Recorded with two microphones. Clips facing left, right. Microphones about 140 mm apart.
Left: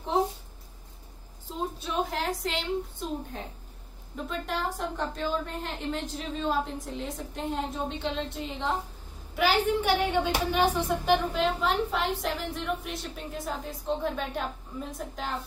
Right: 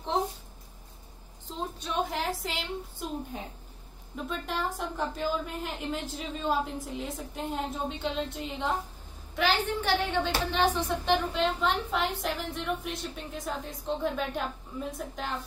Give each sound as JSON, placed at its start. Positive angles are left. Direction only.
{"t": 1.8, "sound": "a woman's voice", "side_deg": 0}